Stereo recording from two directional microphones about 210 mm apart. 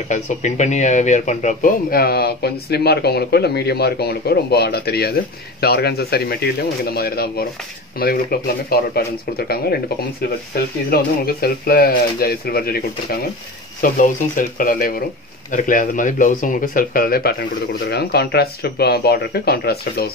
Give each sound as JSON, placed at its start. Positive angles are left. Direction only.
{"t": 0.1, "sound": "speech", "side_deg": 35}
{"t": 10.9, "sound": "speech", "side_deg": 45}